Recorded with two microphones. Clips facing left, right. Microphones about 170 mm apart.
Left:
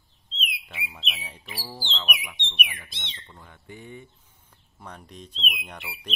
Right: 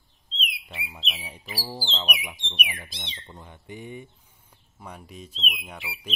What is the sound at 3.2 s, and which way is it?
Speech, 20° right (ahead or behind).